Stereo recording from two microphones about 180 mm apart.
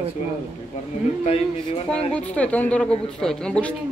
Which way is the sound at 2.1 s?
10° left (ahead or behind).